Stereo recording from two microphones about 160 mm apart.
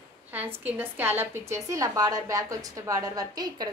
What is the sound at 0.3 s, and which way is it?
A woman's voice, 10° right (ahead or behind).